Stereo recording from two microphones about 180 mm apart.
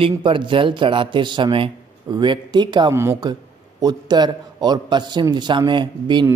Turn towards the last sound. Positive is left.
turn(degrees=-25)  # may be behind; listen again after turning